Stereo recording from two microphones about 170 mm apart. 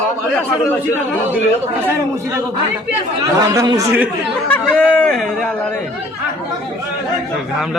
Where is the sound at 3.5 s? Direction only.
20° right (ahead or behind).